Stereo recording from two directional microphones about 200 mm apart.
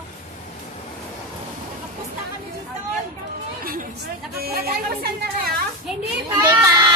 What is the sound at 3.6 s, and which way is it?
Chatter, 45° right (ahead or behind).